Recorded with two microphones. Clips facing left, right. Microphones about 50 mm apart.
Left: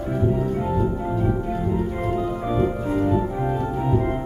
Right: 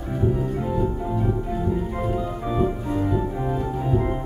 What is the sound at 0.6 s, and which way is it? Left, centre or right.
Organ, centre.